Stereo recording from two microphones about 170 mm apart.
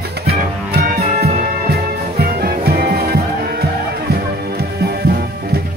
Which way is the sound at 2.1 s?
65° right (ahead or behind).